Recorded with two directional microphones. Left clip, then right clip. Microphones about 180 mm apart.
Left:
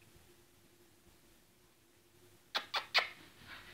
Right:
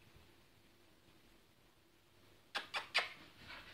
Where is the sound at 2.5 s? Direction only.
40° left (ahead or behind).